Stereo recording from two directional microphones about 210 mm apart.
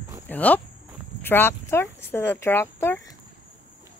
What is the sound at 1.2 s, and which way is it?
Speech, 10° left (ahead or behind).